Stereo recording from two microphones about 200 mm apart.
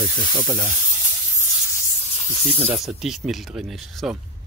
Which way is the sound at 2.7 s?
Centre (ahead or behind).